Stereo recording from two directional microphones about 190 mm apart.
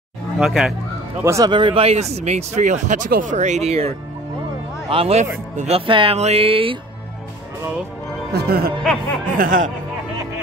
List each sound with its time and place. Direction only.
0.4 s speech: centre (ahead or behind)
1.2 s speech: 15° right (ahead or behind)
8.3 s speech: 55° right (ahead or behind)